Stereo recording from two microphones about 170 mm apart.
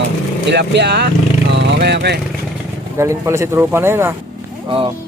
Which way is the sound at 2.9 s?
15° right (ahead or behind).